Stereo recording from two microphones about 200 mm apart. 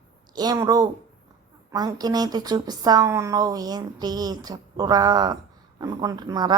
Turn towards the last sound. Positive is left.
turn(degrees=-20)  # may be behind; listen again after turning